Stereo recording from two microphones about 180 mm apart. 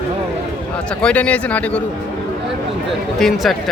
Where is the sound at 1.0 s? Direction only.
10° left (ahead or behind).